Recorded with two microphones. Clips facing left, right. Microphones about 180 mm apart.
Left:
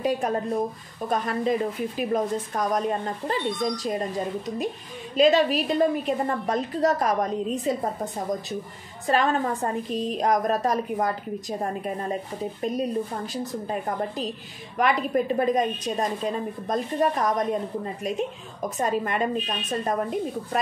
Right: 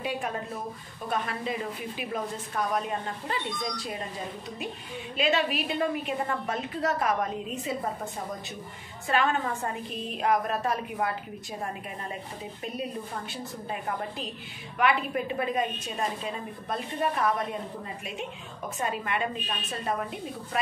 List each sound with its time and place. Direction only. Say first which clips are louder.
0.0 s a woman's voice: left 7 dB; 40° left (ahead or behind)
5.1 s a woman's voice: left 8 dB; 40° left (ahead or behind)
12.6 s a woman's voice: left 8 dB; 40° left (ahead or behind)
18.8 s a woman's voice: left 5 dB; 40° left (ahead or behind)